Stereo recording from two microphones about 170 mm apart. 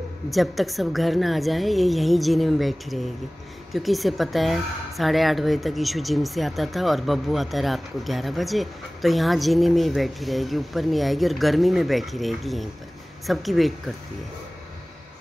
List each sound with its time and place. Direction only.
0.3 s a woman's voice: centre (ahead or behind)